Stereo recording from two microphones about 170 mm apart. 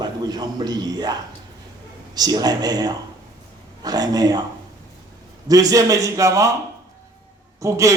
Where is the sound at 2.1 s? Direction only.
25° right (ahead or behind).